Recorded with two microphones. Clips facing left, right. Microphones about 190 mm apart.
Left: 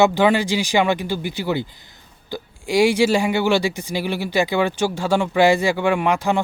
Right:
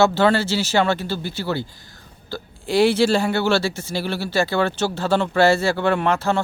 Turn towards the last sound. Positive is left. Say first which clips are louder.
# left 1 dB
turn(degrees=15)  # may be behind; listen again after turning